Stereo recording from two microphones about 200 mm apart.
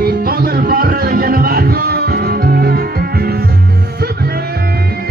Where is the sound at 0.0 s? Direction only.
50° right (ahead or behind).